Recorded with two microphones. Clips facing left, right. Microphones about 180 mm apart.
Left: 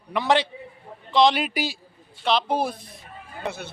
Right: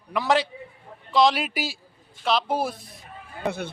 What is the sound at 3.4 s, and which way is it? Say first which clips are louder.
Speech: right 4 dB; 55° right (ahead or behind).